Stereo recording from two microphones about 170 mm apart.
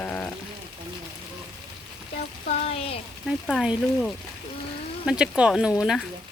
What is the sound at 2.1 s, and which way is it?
Speech, 40° left (ahead or behind).